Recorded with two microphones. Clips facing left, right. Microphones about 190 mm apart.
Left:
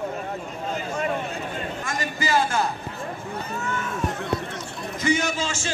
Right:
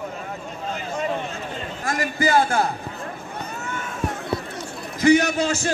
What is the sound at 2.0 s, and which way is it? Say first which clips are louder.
Speech: right 4 dB; 55° right (ahead or behind).